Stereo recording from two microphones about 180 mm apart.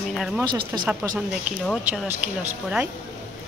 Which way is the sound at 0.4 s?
25° right (ahead or behind).